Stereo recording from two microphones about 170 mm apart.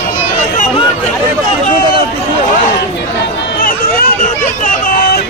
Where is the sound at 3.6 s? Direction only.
55° left (ahead or behind).